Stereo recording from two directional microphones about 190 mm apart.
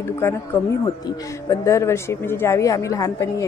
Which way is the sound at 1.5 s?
15° left (ahead or behind).